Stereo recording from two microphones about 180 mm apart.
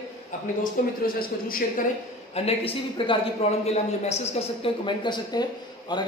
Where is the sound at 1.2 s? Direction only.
55° left (ahead or behind).